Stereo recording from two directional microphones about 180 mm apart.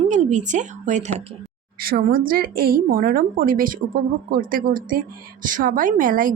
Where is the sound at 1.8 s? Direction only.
55° right (ahead or behind).